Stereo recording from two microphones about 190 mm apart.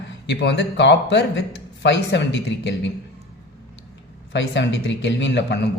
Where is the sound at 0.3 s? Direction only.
65° left (ahead or behind).